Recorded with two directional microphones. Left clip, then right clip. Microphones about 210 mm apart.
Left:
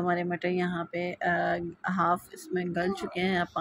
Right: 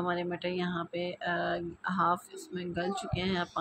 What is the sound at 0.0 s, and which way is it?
Speech, 10° left (ahead or behind).